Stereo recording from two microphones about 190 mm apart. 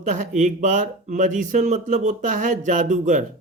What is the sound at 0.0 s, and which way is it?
Speech, 40° right (ahead or behind).